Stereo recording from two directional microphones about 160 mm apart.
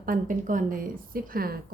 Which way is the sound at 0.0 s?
55° right (ahead or behind).